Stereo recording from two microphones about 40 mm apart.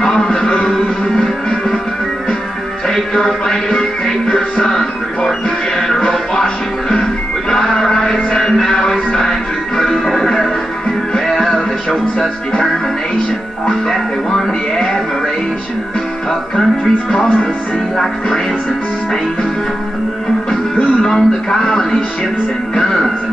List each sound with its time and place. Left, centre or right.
0.0 s music: centre
2.9 s music: centre
8.1 s music: centre
13.8 s speech: centre
21.0 s speech: centre